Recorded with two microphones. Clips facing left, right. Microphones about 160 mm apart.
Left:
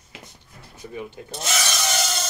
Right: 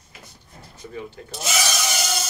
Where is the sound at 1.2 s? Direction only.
20° left (ahead or behind).